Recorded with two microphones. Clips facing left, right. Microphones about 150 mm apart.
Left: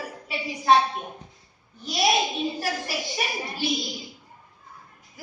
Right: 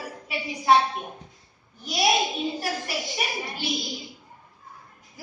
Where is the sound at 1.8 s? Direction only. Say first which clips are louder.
Even; centre (ahead or behind).